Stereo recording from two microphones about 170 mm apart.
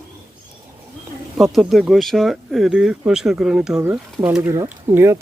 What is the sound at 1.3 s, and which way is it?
Speech, centre (ahead or behind).